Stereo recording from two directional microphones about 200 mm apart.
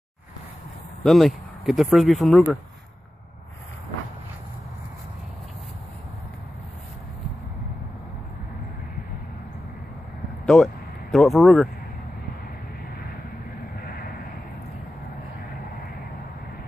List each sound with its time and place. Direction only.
1.0 s speech: centre (ahead or behind)
10.4 s a sound: 5° left (ahead or behind)
13.7 s crow: 50° left (ahead or behind)